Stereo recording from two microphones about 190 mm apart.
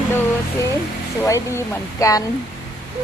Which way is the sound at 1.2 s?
15° left (ahead or behind).